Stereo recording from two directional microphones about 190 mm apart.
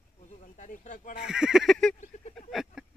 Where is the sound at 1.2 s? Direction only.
5° right (ahead or behind).